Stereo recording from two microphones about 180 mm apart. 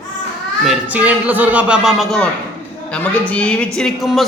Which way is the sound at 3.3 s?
5° left (ahead or behind).